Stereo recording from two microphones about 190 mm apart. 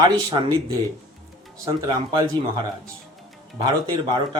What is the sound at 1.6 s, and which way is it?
Speech, 25° right (ahead or behind).